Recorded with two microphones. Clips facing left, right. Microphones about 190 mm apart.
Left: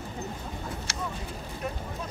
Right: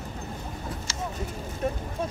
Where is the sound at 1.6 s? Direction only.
30° right (ahead or behind).